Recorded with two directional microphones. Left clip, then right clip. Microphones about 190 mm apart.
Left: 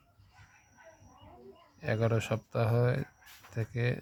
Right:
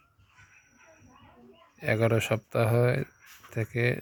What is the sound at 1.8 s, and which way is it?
Speech, 20° right (ahead or behind).